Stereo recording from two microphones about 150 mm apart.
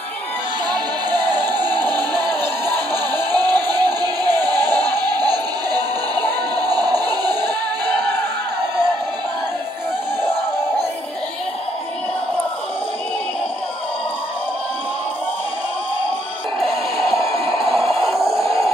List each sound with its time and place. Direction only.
0.7 s music: 25° right (ahead or behind)
2.4 s music: 15° left (ahead or behind)
3.3 s music: 25° right (ahead or behind)
16.5 s music: centre (ahead or behind)
17.5 s a sound: centre (ahead or behind)